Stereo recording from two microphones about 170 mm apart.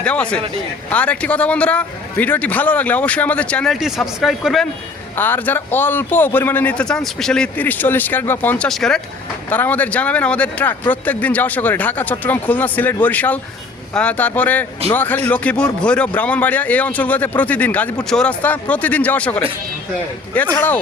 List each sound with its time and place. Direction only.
0.0 s a man's voice: 5° left (ahead or behind)
5.1 s a man's voice: 10° left (ahead or behind)